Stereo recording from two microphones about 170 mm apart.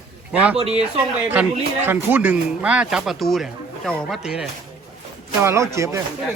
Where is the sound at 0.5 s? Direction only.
35° right (ahead or behind).